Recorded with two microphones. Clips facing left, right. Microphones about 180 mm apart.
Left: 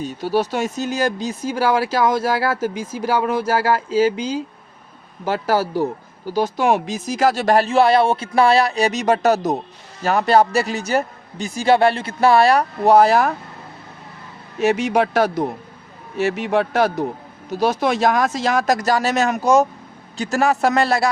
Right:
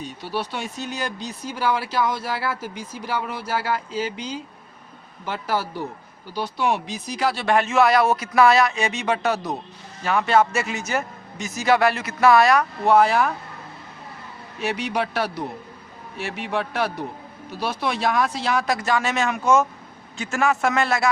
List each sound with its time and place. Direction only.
0.2 s speech: 45° left (ahead or behind)
1.8 s speech: 90° left
2.0 s speech: 45° left (ahead or behind)
5.2 s speech: 40° left (ahead or behind)
14.6 s speech: 45° left (ahead or behind)